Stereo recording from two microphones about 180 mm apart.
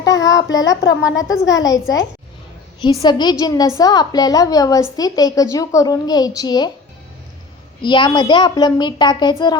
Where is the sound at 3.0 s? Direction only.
25° left (ahead or behind).